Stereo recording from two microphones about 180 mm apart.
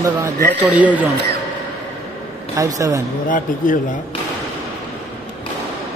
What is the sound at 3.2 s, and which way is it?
Speech, 45° left (ahead or behind).